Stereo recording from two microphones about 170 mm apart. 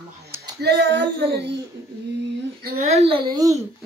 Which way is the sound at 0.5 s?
80° right.